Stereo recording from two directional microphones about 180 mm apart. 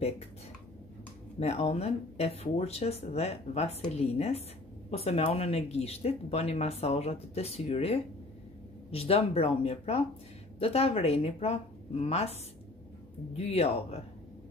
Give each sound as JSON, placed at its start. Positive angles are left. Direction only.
{"t": 1.4, "sound": "speech", "side_deg": 35}
{"t": 13.4, "sound": "speech", "side_deg": 35}